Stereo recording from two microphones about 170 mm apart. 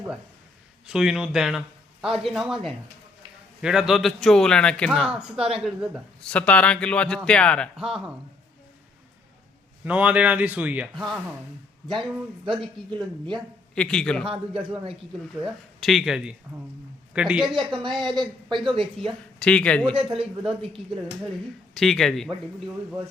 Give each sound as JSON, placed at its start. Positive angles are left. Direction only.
{"t": 0.9, "sound": "speech", "side_deg": -5}
{"t": 9.8, "sound": "speech", "side_deg": -10}
{"t": 12.5, "sound": "a woman's voice", "side_deg": -30}
{"t": 13.7, "sound": "speech", "side_deg": 5}
{"t": 14.3, "sound": "a woman's voice", "side_deg": -30}
{"t": 15.4, "sound": "speech", "side_deg": 0}
{"t": 17.5, "sound": "a woman's voice", "side_deg": -25}
{"t": 19.4, "sound": "speech", "side_deg": 5}
{"t": 19.8, "sound": "a woman's voice", "side_deg": -35}
{"t": 21.8, "sound": "speech", "side_deg": 5}